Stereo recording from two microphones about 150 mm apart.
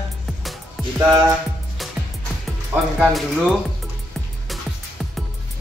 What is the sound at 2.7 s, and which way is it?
Speech, 5° right (ahead or behind).